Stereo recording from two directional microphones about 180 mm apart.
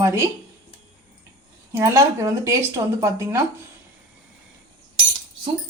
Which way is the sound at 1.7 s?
15° right (ahead or behind).